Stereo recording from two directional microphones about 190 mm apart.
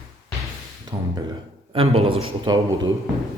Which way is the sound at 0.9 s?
20° right (ahead or behind).